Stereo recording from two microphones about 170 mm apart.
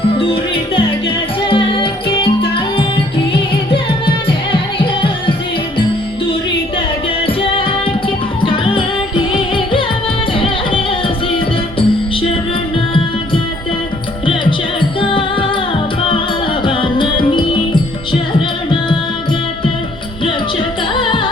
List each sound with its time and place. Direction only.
0.2 s music: 30° left (ahead or behind)
7.3 s music: 35° left (ahead or behind)
15.0 s music: 30° left (ahead or behind)
20.9 s music: 30° left (ahead or behind)